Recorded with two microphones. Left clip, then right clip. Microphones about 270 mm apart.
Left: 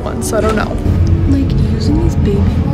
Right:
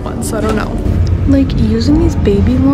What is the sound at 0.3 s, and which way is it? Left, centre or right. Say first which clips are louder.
A woman's voice: left 2 dB; centre.